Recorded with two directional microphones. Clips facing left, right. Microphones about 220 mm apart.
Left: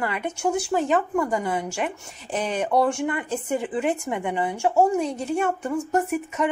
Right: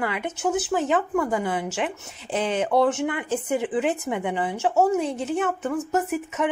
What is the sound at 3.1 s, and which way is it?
Speech, 10° right (ahead or behind).